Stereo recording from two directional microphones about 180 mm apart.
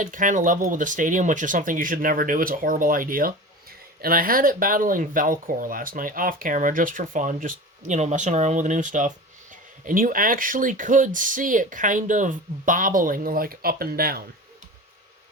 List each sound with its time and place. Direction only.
0.0 s speech: 45° right (ahead or behind)